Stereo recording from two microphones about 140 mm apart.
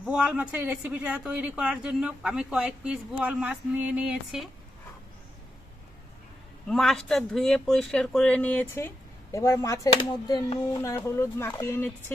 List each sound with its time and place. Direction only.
0.0 s speech: 5° right (ahead or behind)
6.7 s speech: centre (ahead or behind); by 9.9 s 20° left (ahead or behind)
10.0 s speech: 30° left (ahead or behind); by 12.1 s 15° left (ahead or behind)